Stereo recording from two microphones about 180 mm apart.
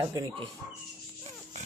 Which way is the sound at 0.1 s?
25° right (ahead or behind).